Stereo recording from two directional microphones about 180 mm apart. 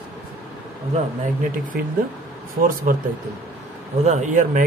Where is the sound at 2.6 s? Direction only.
50° right (ahead or behind).